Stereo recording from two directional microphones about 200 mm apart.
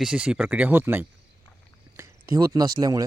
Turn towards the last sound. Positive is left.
turn(degrees=-15)  # may be behind; listen again after turning